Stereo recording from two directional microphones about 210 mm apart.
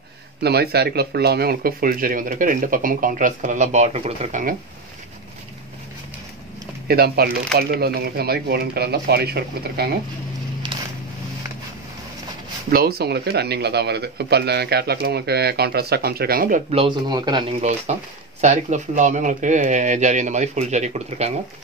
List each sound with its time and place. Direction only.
0.4 s speech: 50° right (ahead or behind)
6.9 s speech: 50° right (ahead or behind)
12.6 s speech: 45° right (ahead or behind)
16.8 s speech: 20° right (ahead or behind)